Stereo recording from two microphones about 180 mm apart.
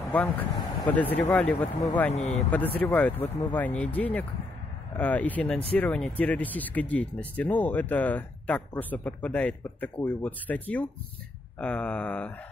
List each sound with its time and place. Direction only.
0.1 s speech: 10° left (ahead or behind)
2.1 s speech: 35° left (ahead or behind)
2.8 s speech: 10° left (ahead or behind)
11.6 s a sound: 5° left (ahead or behind)